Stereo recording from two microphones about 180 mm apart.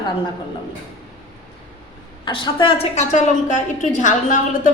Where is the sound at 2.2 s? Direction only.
25° left (ahead or behind).